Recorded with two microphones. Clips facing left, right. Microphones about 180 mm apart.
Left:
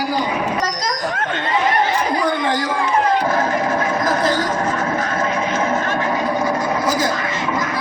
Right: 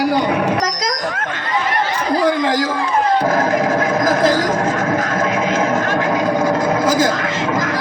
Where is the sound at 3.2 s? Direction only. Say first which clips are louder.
Right 3 dB; 45° right (ahead or behind).